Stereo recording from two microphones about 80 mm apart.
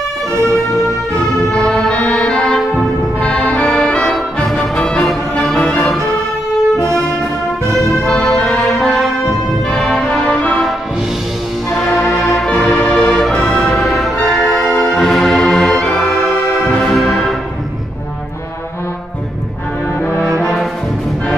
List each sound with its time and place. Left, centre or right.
0.3 s siren: right
1.7 s music: centre
2.0 s brass instrument: centre
3.5 s music: centre
6.8 s saxophone: right
8.0 s music: centre
8.8 s brass instrument: centre
9.7 s music: centre
11.7 s music: centre
14.6 s music: left
14.9 s music: centre
16.3 s music: left
16.7 s brass instrument: centre